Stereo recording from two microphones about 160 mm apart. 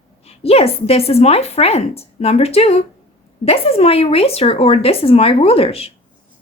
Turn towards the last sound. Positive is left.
turn(degrees=40)  # may be behind; listen again after turning